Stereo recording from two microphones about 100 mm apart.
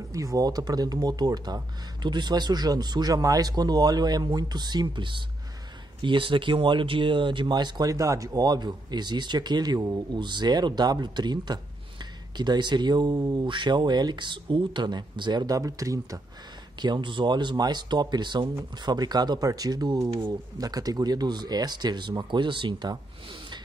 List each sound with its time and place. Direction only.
0.1 s speech: 35° right (ahead or behind)
16.8 s speech: 50° right (ahead or behind)
20.1 s speech: 55° right (ahead or behind)
20.5 s speech: 40° right (ahead or behind)